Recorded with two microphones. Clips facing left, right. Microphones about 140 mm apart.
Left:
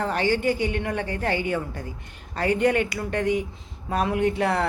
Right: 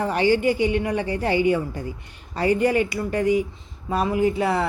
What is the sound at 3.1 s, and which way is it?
A woman's voice, 5° right (ahead or behind).